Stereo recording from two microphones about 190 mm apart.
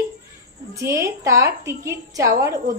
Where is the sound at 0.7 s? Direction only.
15° right (ahead or behind).